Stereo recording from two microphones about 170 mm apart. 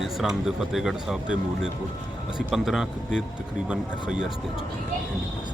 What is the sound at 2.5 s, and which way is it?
Speech, centre (ahead or behind).